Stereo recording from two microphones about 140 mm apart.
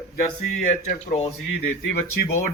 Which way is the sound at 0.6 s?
60° left (ahead or behind).